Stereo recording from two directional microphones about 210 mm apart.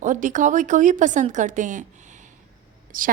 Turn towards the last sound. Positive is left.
turn(degrees=-40)  # may be behind; listen again after turning